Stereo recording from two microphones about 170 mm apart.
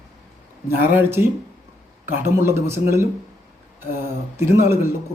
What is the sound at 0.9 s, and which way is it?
A man's voice, 15° right (ahead or behind).